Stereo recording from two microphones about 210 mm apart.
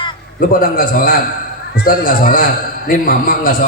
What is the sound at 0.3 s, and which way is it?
A man's voice, 40° left (ahead or behind).